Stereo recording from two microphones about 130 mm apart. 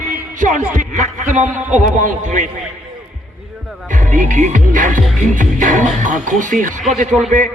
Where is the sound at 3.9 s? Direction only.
75° right (ahead or behind).